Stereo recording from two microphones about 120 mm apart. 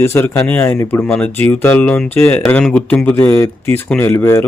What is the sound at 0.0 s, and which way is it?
Speech, 20° left (ahead or behind).